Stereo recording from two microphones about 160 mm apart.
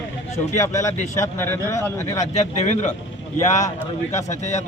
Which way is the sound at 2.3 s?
50° left (ahead or behind).